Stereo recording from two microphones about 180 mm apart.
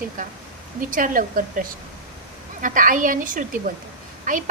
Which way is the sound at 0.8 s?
45° right (ahead or behind).